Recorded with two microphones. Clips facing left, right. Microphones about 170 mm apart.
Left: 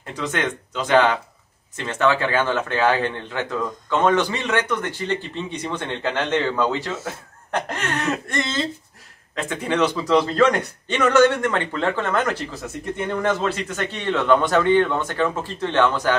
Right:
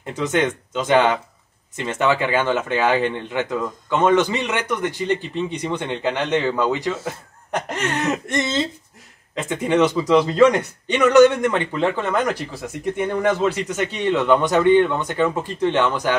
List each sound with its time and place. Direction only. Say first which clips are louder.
0.0 s a man's voice: right 5 dB; 20° right (ahead or behind)